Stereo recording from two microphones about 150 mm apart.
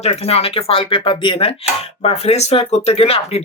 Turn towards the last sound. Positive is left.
turn(degrees=40)  # may be behind; listen again after turning